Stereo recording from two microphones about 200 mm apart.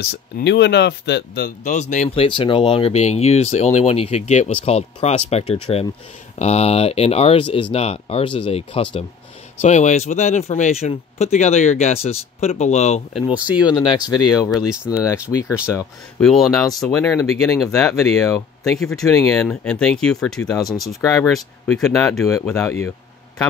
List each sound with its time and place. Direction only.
0.0 s speech: 55° left (ahead or behind); by 13.0 s 35° left (ahead or behind)
13.1 s speech: 5° right (ahead or behind)
13.7 s speech: 20° left (ahead or behind)
14.5 s speech: 5° right (ahead or behind)
16.2 s speech: centre (ahead or behind)
21.0 s speech: 15° left (ahead or behind)
21.3 s speech: centre (ahead or behind)
22.3 s speech: 15° left (ahead or behind)
22.6 s a sound: 10° left (ahead or behind)